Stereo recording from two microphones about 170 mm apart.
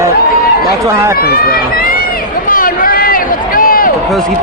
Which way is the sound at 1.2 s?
60° left (ahead or behind).